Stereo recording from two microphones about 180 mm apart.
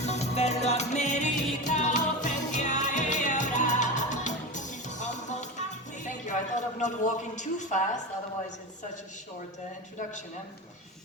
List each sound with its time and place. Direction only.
0.0 s music: 40° left (ahead or behind)
6.1 s speech: 40° left (ahead or behind)